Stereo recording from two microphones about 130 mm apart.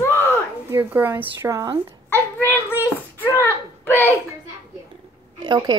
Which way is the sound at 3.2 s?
15° left (ahead or behind).